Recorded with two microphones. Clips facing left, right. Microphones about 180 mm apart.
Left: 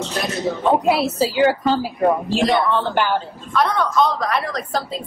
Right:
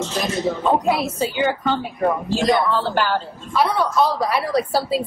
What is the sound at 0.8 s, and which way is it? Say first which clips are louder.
Speech: left 3 dB; 30° left (ahead or behind).